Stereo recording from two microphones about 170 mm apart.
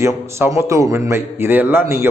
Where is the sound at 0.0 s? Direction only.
15° right (ahead or behind).